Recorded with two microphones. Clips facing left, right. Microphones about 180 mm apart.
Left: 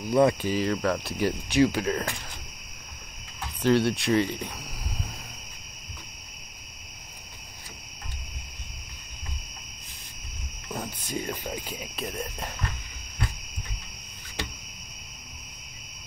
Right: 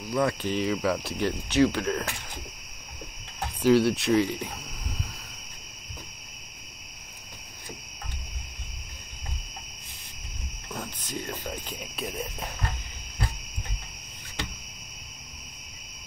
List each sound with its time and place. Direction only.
0.1 s cricket: 20° left (ahead or behind)
0.5 s speech: centre (ahead or behind)
3.6 s speech: 5° right (ahead or behind)
10.7 s cricket: 10° left (ahead or behind)